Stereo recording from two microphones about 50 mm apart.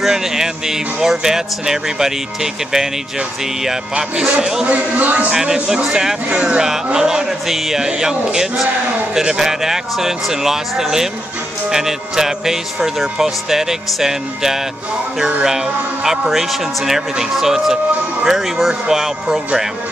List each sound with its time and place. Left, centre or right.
0.0 s speech: centre
4.6 s speech: right
5.3 s speech: centre
6.2 s speech: right